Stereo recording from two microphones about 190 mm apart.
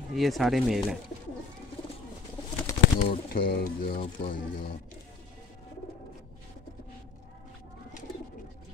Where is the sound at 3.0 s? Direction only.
50° left (ahead or behind).